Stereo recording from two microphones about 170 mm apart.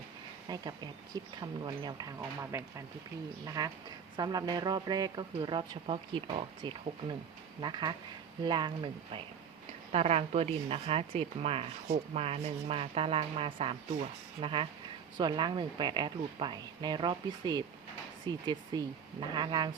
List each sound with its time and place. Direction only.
0.4 s a woman's voice: 25° right (ahead or behind)